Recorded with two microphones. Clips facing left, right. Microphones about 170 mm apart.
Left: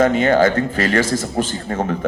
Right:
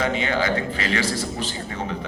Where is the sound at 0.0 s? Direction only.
50° left (ahead or behind).